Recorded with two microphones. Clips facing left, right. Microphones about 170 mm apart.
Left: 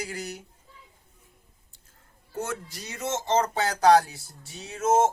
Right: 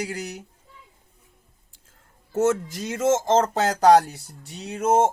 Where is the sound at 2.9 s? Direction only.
50° right (ahead or behind).